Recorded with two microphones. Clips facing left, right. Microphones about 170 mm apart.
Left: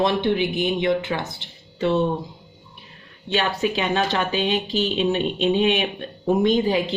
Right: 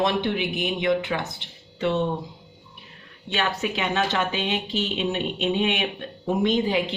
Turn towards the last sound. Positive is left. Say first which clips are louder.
# left 3 dB
turn(degrees=40)  # may be behind; listen again after turning